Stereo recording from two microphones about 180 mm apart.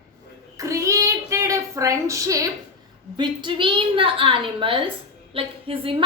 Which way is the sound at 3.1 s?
25° right (ahead or behind).